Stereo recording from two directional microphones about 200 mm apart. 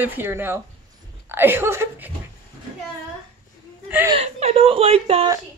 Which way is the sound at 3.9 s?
10° right (ahead or behind).